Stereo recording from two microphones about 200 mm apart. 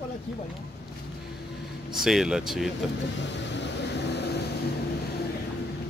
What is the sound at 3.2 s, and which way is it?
Vehicle, 60° left (ahead or behind).